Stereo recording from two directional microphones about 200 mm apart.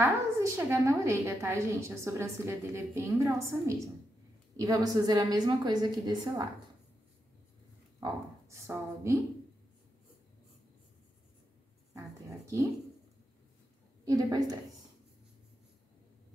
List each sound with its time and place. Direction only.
0.0 s a woman's voice: 15° right (ahead or behind)
8.0 s a woman's voice: 15° right (ahead or behind)
14.0 s a woman's voice: 20° right (ahead or behind)